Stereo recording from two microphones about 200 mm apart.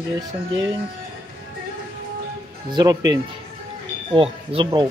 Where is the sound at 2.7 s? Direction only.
20° right (ahead or behind).